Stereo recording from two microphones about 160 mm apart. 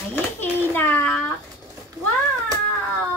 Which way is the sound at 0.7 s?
10° left (ahead or behind).